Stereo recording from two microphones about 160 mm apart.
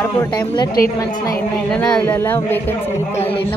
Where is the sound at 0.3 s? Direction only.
25° left (ahead or behind).